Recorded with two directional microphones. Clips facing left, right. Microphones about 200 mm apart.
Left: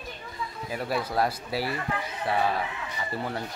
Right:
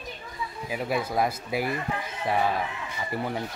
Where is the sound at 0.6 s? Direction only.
10° right (ahead or behind).